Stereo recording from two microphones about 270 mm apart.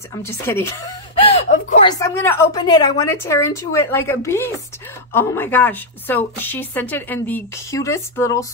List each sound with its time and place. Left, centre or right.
0.1 s speech: centre
1.5 s speech: left
1.9 s a woman's voice: centre